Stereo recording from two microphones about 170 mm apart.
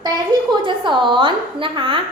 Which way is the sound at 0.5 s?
30° right (ahead or behind).